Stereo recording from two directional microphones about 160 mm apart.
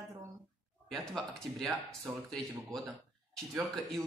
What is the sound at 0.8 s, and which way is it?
Speech, centre (ahead or behind).